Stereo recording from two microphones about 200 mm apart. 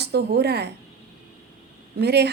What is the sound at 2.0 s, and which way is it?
Speech, 55° right (ahead or behind).